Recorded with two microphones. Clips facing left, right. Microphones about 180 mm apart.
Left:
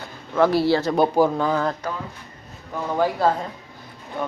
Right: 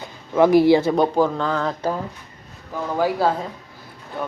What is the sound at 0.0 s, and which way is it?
Speech, 15° right (ahead or behind).